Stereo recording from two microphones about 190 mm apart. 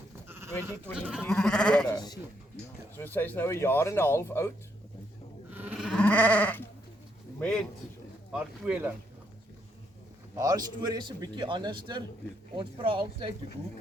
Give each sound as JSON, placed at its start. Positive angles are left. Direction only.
{"t": 0.3, "sound": "sheep", "side_deg": -15}
{"t": 1.2, "sound": "sheep", "side_deg": 5}
{"t": 1.9, "sound": "speech", "side_deg": 20}
{"t": 3.0, "sound": "speech", "side_deg": 10}
{"t": 5.5, "sound": "sheep", "side_deg": -10}
{"t": 7.3, "sound": "speech", "side_deg": 5}
{"t": 10.3, "sound": "a man's voice", "side_deg": -20}